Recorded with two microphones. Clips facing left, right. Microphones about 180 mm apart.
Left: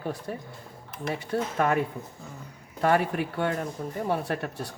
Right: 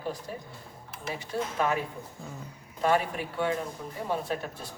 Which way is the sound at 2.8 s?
60° left (ahead or behind).